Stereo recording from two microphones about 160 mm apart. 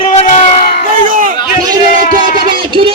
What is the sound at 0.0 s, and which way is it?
Crowd, 45° left (ahead or behind).